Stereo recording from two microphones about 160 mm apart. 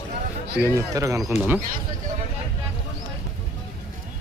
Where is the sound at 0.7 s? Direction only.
20° right (ahead or behind).